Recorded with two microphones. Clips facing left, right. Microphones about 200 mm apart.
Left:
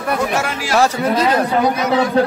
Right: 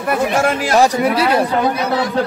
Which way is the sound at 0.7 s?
10° right (ahead or behind).